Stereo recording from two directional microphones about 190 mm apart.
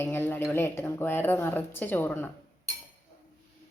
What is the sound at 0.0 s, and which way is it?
Speech, 10° left (ahead or behind).